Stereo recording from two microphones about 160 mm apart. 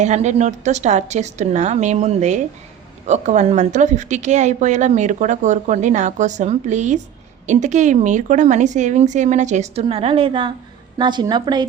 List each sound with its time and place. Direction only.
0.0 s a woman's voice: 45° right (ahead or behind); by 11.6 s 25° right (ahead or behind)